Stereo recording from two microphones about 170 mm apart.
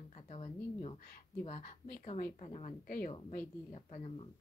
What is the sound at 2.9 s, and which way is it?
Speech, 55° left (ahead or behind).